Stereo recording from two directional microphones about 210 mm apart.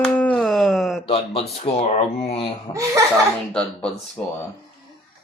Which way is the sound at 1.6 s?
30° left (ahead or behind).